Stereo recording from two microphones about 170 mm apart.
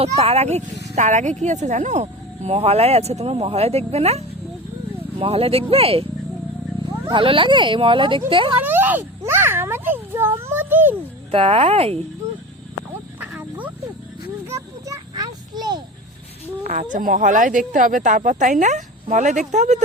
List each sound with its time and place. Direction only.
0.0 s speech: 35° right (ahead or behind)
8.5 s a child's voice: 10° right (ahead or behind)
11.3 s speech: 35° right (ahead or behind)
13.1 s a sound: 10° right (ahead or behind)
14.8 s a sound: 20° right (ahead or behind)
16.9 s speech: 55° right (ahead or behind)